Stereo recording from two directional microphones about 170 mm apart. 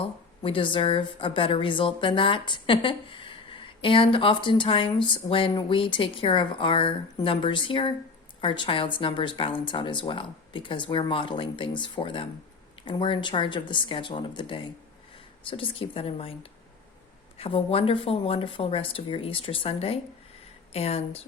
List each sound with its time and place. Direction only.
0.0 s a woman's voice: 30° left (ahead or behind)